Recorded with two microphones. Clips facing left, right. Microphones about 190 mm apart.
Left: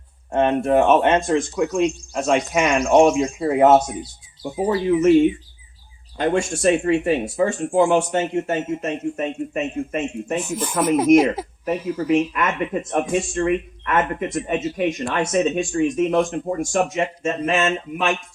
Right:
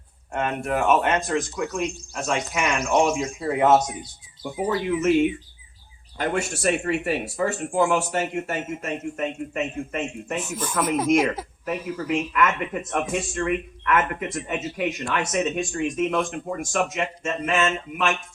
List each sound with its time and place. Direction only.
0.3 s speech: 25° left (ahead or behind)
6.6 s speech: 25° left (ahead or behind)